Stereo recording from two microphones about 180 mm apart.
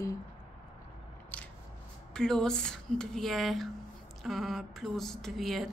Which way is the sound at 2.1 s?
5° left (ahead or behind).